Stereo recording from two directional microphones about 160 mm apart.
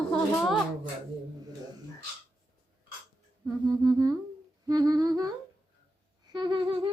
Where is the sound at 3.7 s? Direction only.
20° right (ahead or behind).